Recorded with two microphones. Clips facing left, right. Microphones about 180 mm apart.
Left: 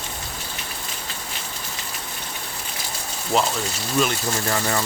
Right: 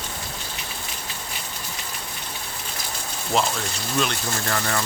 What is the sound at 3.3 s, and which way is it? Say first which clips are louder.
Speech: left 2 dB; centre (ahead or behind).